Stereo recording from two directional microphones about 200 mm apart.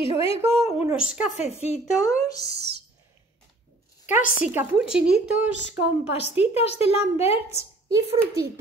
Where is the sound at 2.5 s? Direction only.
55° right (ahead or behind).